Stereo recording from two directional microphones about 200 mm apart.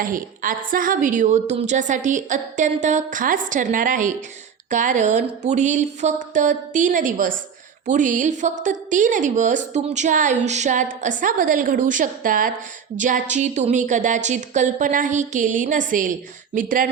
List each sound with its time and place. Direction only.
0.0 s a woman's voice: 45° right (ahead or behind)